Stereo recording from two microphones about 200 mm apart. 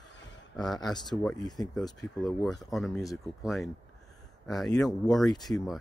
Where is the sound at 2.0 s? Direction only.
Centre (ahead or behind).